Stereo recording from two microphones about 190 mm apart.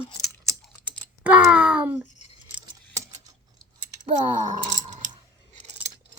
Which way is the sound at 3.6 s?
25° right (ahead or behind).